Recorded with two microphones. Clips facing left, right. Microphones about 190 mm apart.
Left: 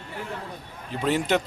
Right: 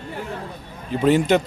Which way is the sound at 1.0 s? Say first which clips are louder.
Right 7 dB; centre (ahead or behind).